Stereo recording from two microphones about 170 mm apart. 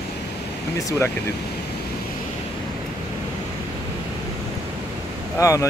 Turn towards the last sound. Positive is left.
turn(degrees=20)  # may be behind; listen again after turning